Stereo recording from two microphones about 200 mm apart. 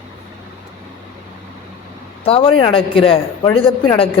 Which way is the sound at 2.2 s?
30° left (ahead or behind).